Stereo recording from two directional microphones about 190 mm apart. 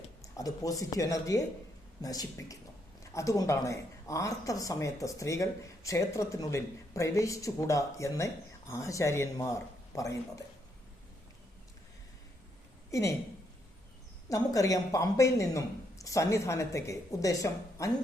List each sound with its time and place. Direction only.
0.2 s speech: 20° left (ahead or behind)
12.9 s a woman's voice: 15° left (ahead or behind)
14.3 s speech: 15° left (ahead or behind)